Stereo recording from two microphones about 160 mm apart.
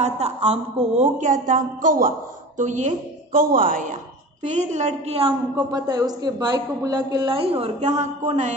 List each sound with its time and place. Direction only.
0.0 s a woman's voice: 40° right (ahead or behind); by 3.8 s 60° right (ahead or behind)
4.6 s a woman's voice: 45° right (ahead or behind)
5.6 s a woman's voice: 25° right (ahead or behind); by 8.5 s 45° right (ahead or behind)